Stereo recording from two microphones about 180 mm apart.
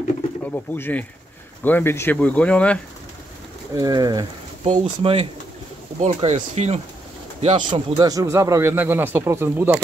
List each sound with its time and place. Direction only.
0.5 s speech: 10° left (ahead or behind)
3.7 s speech: 20° right (ahead or behind)
5.9 s speech: 45° right (ahead or behind)
7.4 s speech: 30° right (ahead or behind); by 9.8 s 10° right (ahead or behind)